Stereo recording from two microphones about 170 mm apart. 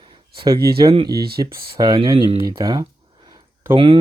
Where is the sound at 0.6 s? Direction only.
65° right (ahead or behind).